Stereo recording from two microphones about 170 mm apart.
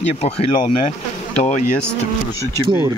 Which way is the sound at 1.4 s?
45° left (ahead or behind).